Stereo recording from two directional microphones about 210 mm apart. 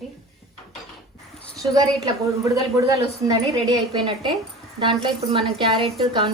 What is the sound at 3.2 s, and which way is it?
A woman's voice, 20° right (ahead or behind).